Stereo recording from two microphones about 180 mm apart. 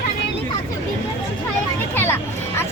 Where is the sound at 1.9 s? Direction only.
15° left (ahead or behind).